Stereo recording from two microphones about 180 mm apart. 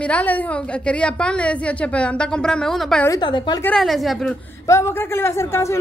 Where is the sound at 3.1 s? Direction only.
25° left (ahead or behind).